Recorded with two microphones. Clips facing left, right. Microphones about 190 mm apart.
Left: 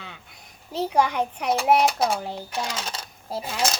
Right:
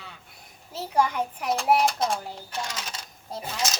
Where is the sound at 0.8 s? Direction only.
70° left (ahead or behind).